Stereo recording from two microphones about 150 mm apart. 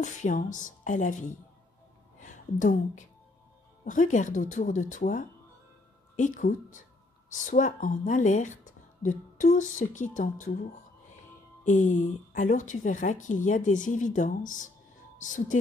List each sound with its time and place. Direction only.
0.0 s speech: 55° left (ahead or behind)
2.1 s music: 60° left (ahead or behind)
3.8 s a woman's voice: 60° left (ahead or behind)